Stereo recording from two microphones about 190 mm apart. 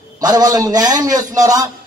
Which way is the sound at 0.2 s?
20° right (ahead or behind).